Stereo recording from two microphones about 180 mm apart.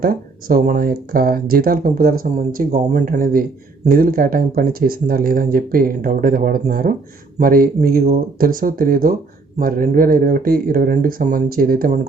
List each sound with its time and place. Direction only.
0.0 s speech: 55° right (ahead or behind)